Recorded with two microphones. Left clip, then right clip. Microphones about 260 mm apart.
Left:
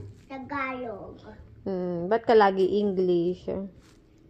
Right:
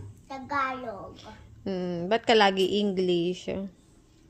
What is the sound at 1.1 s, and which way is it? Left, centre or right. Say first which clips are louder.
A woman's voice: even; right.